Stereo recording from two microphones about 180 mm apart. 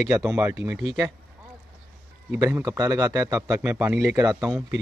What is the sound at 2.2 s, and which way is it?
A man's voice, 15° right (ahead or behind).